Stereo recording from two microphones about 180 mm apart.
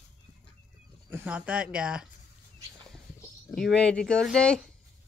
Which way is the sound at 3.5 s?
5° left (ahead or behind).